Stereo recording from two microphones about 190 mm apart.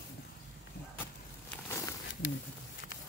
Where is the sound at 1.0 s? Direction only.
10° left (ahead or behind).